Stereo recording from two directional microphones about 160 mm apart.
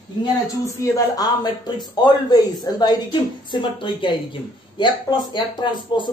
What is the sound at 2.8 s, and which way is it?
Speech, 30° left (ahead or behind).